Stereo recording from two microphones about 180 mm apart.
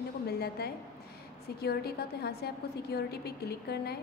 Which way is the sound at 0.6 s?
60° left (ahead or behind).